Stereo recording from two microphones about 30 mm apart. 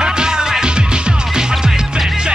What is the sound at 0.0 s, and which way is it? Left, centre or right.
Music, right.